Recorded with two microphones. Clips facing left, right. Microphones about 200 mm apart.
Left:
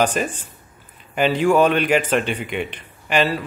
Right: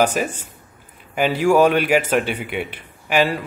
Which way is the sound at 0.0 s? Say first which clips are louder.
Right 1 dB; 10° right (ahead or behind).